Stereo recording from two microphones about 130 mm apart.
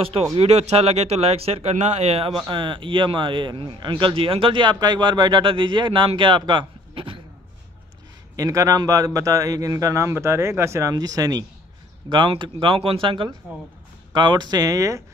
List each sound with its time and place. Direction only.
0.0 s speech: 50° right (ahead or behind)
2.4 s speech: 40° right (ahead or behind)
8.4 s a man's voice: 25° right (ahead or behind)